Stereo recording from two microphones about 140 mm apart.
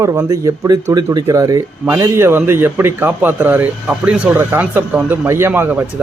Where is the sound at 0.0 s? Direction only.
20° right (ahead or behind).